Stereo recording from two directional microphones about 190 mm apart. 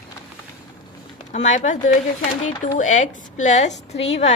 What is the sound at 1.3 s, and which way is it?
A woman's voice, 40° left (ahead or behind).